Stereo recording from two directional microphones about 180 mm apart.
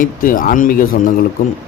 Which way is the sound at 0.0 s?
50° left (ahead or behind).